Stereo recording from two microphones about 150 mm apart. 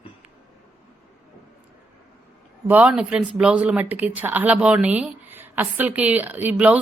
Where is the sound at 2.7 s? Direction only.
10° right (ahead or behind).